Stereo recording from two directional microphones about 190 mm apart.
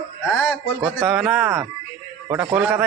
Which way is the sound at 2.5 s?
5° right (ahead or behind).